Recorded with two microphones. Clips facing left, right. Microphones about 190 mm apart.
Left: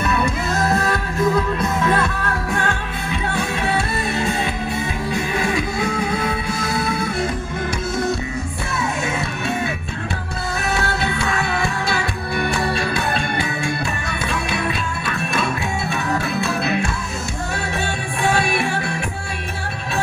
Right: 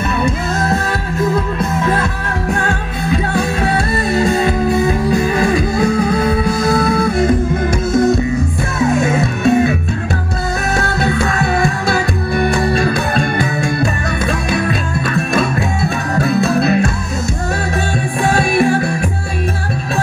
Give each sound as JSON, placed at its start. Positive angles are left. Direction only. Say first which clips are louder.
{"t": 3.1, "sound": "music", "louder": "right 7 dB", "side_deg": -40}
{"t": 10.7, "sound": "music", "louder": "right 5 dB", "side_deg": -40}
{"t": 16.2, "sound": "music", "louder": "right 8 dB", "side_deg": -40}
{"t": 18.3, "sound": "music", "louder": "right 9 dB", "side_deg": -40}